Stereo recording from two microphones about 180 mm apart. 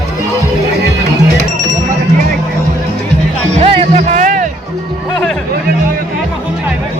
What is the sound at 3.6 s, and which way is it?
Music, 30° right (ahead or behind).